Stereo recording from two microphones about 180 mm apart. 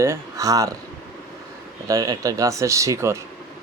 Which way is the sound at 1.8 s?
20° right (ahead or behind).